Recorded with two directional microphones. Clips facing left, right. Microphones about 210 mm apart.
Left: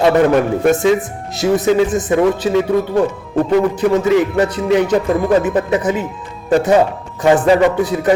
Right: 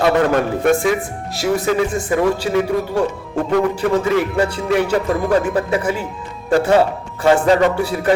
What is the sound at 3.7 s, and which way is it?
A man's voice, 20° left (ahead or behind).